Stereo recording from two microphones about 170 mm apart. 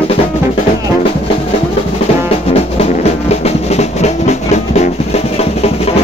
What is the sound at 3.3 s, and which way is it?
Music, 40° left (ahead or behind).